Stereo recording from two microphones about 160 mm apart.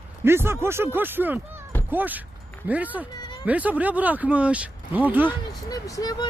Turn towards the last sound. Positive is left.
turn(degrees=25)  # may be behind; listen again after turning